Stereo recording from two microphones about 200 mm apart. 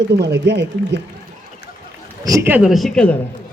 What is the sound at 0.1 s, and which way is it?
Speech, 55° right (ahead or behind).